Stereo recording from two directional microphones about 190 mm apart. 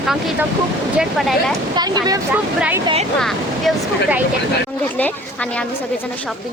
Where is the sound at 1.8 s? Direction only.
20° right (ahead or behind).